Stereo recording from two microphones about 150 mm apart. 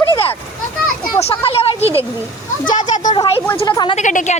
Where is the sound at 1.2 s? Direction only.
40° left (ahead or behind).